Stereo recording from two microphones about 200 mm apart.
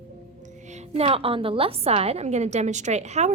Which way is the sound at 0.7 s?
35° right (ahead or behind).